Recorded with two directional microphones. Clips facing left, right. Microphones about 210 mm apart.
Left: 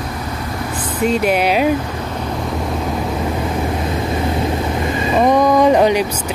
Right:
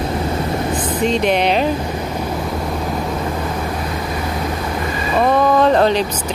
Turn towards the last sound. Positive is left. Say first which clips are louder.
# left 2 dB
turn(degrees=10)  # may be behind; listen again after turning